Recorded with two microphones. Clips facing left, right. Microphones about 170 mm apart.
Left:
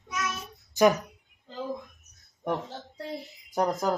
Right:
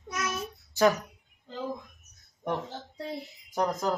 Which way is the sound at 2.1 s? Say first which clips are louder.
Left 2 dB; centre (ahead or behind).